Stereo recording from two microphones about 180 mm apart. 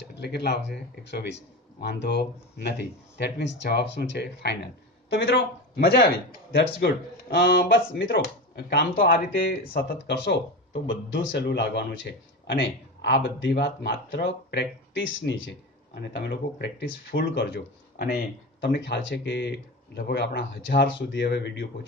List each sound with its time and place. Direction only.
0.1 s speech: 65° left (ahead or behind)